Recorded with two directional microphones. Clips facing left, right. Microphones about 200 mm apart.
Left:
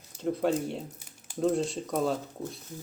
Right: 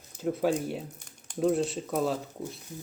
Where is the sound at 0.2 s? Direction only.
5° right (ahead or behind).